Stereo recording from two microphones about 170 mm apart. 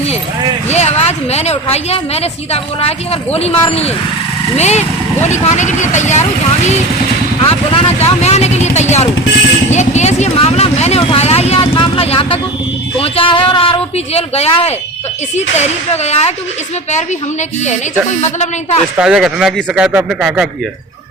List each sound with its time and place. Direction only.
0.7 s a woman's voice: 40° left (ahead or behind)
7.4 s a woman's voice: 35° left (ahead or behind)
9.6 s vehicle: 40° left (ahead or behind)
13.0 s a woman's voice: 30° left (ahead or behind)
18.2 s a woman's voice: 40° left (ahead or behind)
18.9 s speech: 5° right (ahead or behind)